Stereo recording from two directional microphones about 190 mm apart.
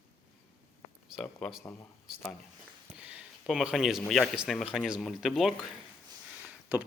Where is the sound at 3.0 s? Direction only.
5° right (ahead or behind).